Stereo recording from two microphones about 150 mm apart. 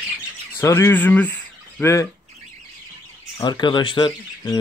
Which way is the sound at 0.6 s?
15° left (ahead or behind).